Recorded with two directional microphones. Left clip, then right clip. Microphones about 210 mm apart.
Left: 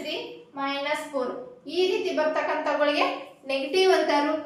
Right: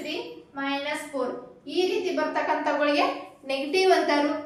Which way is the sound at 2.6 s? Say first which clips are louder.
Left 1 dB; centre (ahead or behind).